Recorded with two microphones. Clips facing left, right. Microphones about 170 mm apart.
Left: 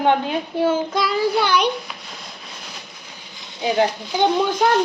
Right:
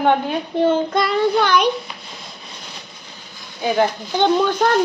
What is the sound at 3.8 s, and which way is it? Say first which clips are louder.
Speech: right 1 dB; 10° left (ahead or behind).